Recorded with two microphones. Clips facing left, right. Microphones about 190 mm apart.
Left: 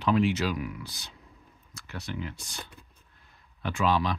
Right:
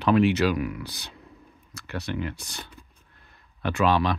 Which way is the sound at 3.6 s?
65° right (ahead or behind).